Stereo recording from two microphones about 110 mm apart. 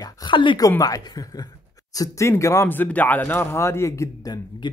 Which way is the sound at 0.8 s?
35° left (ahead or behind).